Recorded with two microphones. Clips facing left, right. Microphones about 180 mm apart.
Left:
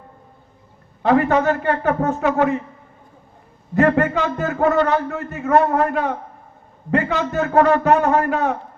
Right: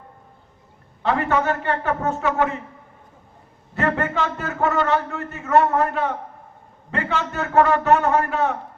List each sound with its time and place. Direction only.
1.0 s a man's voice: 35° left (ahead or behind)
3.8 s a man's voice: 40° left (ahead or behind)